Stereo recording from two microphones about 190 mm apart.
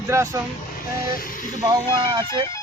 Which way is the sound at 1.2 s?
45° left (ahead or behind).